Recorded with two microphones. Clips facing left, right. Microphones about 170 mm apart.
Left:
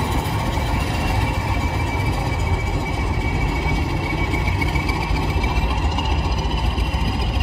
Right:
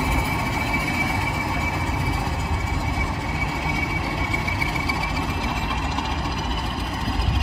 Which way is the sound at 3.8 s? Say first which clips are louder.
Left 3 dB; 65° left (ahead or behind).